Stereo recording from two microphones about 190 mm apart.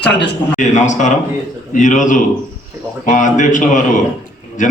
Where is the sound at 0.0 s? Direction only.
60° left (ahead or behind).